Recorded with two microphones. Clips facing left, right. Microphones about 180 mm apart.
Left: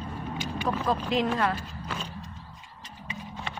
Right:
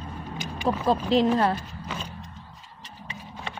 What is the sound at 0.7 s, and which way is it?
Speech, 30° right (ahead or behind).